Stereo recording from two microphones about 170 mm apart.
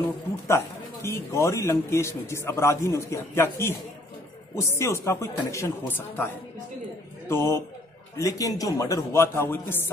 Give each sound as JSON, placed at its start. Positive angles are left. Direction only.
{"t": 0.0, "sound": "a man's voice", "side_deg": 15}